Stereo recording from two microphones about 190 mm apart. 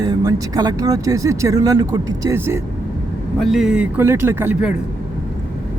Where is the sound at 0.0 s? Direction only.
20° right (ahead or behind).